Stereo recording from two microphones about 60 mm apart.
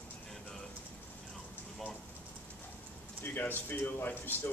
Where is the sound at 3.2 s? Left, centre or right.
Left.